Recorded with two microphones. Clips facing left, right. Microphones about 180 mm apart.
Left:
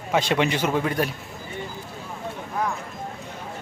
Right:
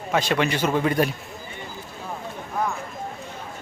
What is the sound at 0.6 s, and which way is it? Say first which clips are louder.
Speech: right 2 dB; centre (ahead or behind).